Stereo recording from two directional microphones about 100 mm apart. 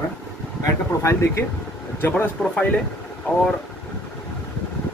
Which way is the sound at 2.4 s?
10° left (ahead or behind).